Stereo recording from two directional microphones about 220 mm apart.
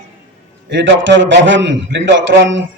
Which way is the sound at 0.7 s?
55° right (ahead or behind).